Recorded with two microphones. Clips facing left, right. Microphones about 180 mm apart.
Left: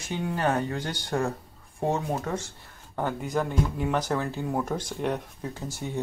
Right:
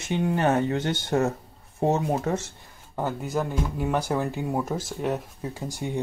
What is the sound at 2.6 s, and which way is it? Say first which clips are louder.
Speech: right 1 dB; 10° right (ahead or behind).